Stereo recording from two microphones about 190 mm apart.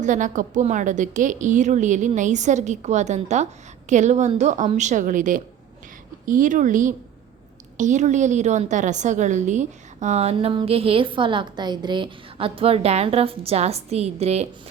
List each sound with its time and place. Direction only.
0.0 s a woman's voice: 40° right (ahead or behind)